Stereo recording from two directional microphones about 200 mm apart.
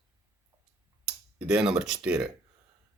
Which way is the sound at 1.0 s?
5° right (ahead or behind).